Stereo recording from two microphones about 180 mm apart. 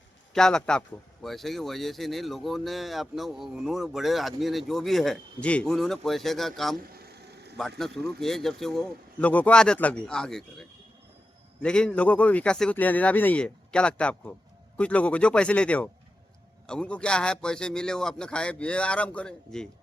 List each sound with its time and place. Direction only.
0.3 s speech: 5° left (ahead or behind)
6.8 s vehicle: 60° right (ahead or behind)
7.8 s speech: centre (ahead or behind)